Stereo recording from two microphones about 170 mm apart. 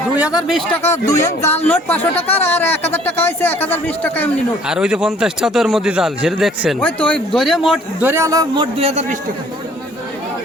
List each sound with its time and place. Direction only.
0.4 s a man's voice: centre (ahead or behind)
0.8 s speech: 15° left (ahead or behind)
4.7 s a man's voice: 5° right (ahead or behind)
8.0 s a man's voice: 15° right (ahead or behind); by 9.1 s 40° right (ahead or behind)